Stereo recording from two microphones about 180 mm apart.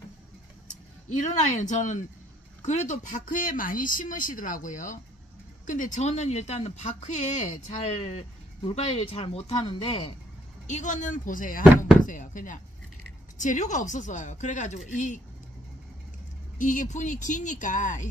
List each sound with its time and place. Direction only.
1.0 s speech: 40° left (ahead or behind)
10.7 s speech: 45° left (ahead or behind)
16.5 s speech: 45° left (ahead or behind)